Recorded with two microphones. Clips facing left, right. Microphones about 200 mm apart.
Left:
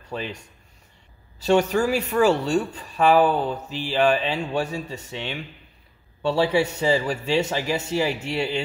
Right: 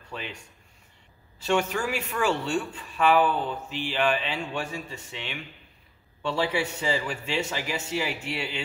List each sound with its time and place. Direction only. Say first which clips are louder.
0.1 s speech: left 7 dB; 40° left (ahead or behind)
1.4 s speech: left 7 dB; 40° left (ahead or behind)